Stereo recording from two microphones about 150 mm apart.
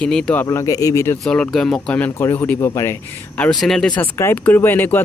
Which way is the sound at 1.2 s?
5° left (ahead or behind).